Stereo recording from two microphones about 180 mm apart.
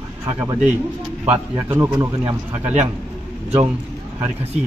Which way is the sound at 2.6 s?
40° right (ahead or behind).